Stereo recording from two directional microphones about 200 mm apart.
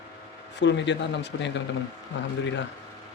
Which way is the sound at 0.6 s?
60° left (ahead or behind).